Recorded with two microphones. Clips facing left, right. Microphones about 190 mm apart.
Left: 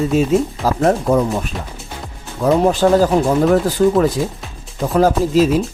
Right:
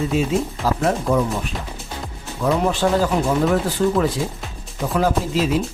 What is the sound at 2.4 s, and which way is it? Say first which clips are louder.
Speech: left 5 dB; 40° left (ahead or behind).